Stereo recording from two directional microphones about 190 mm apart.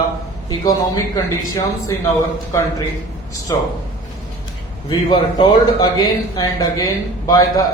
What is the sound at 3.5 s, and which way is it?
Speech, 20° left (ahead or behind).